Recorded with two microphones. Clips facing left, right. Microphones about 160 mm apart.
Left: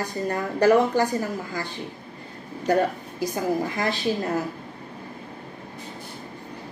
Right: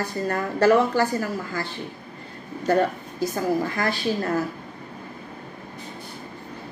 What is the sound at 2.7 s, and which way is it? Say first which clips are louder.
A woman's voice: right 1 dB; 15° left (ahead or behind).